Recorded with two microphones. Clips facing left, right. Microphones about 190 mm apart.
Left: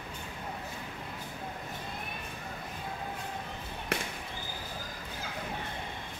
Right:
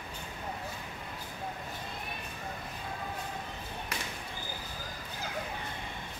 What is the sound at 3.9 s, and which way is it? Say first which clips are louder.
Basketball bounce: left 8 dB; 60° left (ahead or behind).